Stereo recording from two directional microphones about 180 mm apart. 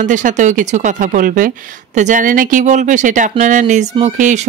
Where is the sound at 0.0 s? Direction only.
45° right (ahead or behind).